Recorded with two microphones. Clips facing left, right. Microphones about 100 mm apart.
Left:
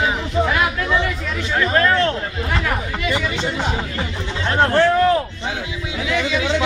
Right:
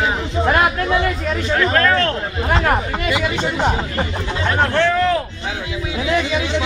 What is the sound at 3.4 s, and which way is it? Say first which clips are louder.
Speech: right 3 dB; 45° right (ahead or behind).